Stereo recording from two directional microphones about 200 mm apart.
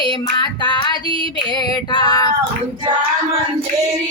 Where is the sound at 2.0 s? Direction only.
20° left (ahead or behind).